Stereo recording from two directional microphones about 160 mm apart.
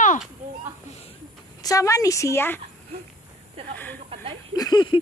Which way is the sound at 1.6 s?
20° left (ahead or behind).